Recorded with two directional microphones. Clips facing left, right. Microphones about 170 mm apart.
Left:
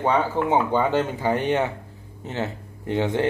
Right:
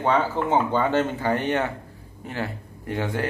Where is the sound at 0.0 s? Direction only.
15° left (ahead or behind).